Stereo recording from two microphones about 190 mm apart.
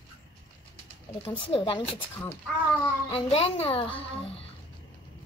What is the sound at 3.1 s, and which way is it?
A child's voice, 30° left (ahead or behind).